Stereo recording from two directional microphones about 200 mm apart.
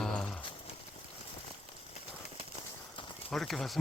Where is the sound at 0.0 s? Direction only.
5° left (ahead or behind).